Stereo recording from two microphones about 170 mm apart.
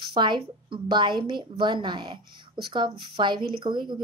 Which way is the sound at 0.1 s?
25° right (ahead or behind).